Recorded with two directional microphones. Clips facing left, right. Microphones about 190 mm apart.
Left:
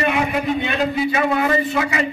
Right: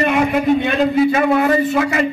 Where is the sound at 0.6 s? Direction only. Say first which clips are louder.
Right 6 dB; 45° right (ahead or behind).